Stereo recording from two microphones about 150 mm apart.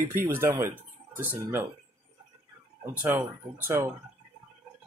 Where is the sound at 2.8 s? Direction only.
15° right (ahead or behind).